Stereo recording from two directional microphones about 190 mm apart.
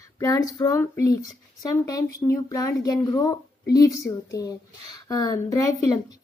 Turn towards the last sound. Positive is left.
turn(degrees=15)  # may be behind; listen again after turning